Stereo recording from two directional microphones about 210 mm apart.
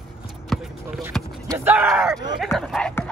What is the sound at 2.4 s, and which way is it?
Dog, centre (ahead or behind).